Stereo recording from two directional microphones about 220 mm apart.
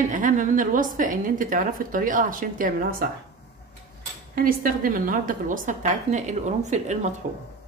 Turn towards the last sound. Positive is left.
turn(degrees=-30)  # may be behind; listen again after turning